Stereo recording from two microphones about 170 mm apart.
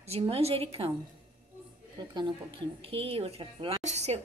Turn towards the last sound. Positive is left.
turn(degrees=-40)  # may be behind; listen again after turning